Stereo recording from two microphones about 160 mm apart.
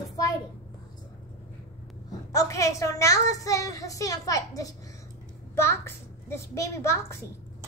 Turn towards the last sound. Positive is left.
turn(degrees=15)  # may be behind; listen again after turning